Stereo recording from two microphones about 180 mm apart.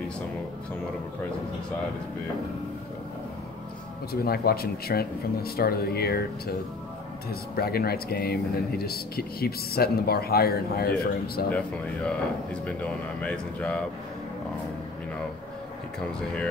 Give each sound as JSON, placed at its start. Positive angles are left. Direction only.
{"t": 4.1, "sound": "speech", "side_deg": 60}
{"t": 13.2, "sound": "speech", "side_deg": 5}